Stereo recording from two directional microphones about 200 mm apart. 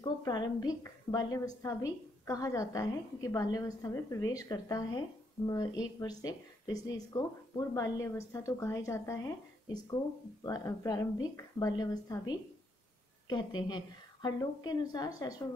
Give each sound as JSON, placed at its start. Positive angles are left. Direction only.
{"t": 0.2, "sound": "a woman's voice", "side_deg": 20}